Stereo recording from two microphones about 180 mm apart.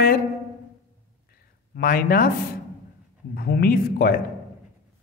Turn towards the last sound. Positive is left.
turn(degrees=55)  # may be behind; listen again after turning